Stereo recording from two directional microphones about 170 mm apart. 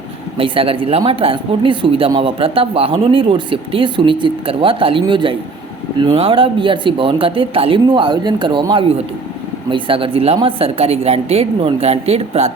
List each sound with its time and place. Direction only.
0.3 s speech: 30° right (ahead or behind)